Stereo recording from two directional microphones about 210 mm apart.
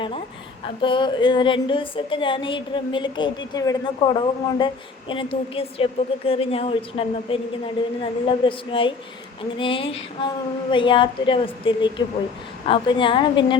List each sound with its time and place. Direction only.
0.6 s a woman's voice: 25° left (ahead or behind)